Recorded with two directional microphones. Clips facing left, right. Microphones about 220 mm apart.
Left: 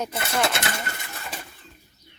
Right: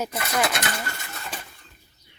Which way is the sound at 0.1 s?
30° left (ahead or behind).